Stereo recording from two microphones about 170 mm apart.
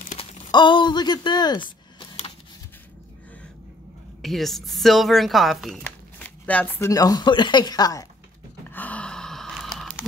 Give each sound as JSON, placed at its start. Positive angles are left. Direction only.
{"t": 0.5, "sound": "speech", "side_deg": 25}
{"t": 4.2, "sound": "a woman's voice", "side_deg": 0}
{"t": 5.9, "sound": "shuffling cards", "side_deg": 10}
{"t": 6.9, "sound": "speech", "side_deg": 20}
{"t": 8.7, "sound": "gasp", "side_deg": 10}